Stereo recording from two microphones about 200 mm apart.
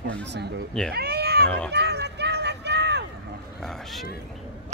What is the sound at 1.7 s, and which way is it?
Run, 55° right (ahead or behind).